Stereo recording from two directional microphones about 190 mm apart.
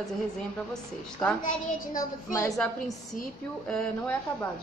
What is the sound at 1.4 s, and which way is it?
Speech, 45° left (ahead or behind).